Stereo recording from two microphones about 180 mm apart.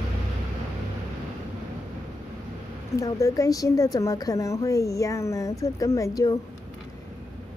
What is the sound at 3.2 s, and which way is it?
A woman's voice, 20° left (ahead or behind).